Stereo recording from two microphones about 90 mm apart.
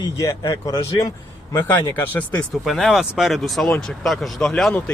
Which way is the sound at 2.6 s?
Centre (ahead or behind).